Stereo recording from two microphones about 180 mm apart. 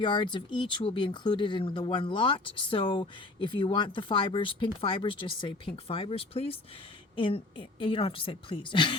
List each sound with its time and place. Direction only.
0.0 s speech: 25° left (ahead or behind)